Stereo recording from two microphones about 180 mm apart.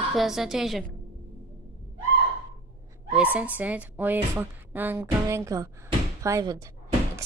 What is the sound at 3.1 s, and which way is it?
A woman's voice, 10° right (ahead or behind).